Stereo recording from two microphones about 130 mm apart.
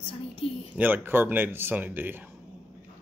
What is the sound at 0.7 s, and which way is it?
Speech, 15° right (ahead or behind).